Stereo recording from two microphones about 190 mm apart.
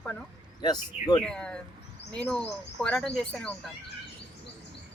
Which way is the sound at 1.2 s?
5° left (ahead or behind).